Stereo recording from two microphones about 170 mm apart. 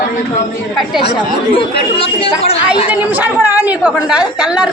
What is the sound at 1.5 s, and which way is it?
Speech, 35° left (ahead or behind).